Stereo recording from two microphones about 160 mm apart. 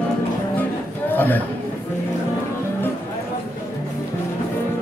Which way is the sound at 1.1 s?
10° left (ahead or behind).